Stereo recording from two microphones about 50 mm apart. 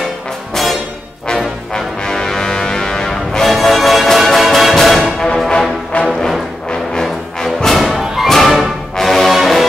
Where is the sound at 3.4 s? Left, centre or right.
Centre.